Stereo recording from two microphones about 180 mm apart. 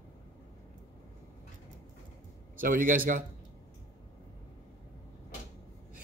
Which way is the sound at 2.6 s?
50° right (ahead or behind).